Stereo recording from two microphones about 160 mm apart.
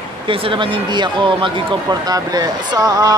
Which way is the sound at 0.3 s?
30° right (ahead or behind).